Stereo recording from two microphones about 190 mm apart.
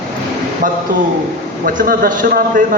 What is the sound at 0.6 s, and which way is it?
A man's voice, 45° right (ahead or behind).